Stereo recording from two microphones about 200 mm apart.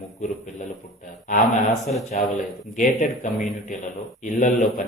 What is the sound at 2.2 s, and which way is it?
Speech, 35° left (ahead or behind).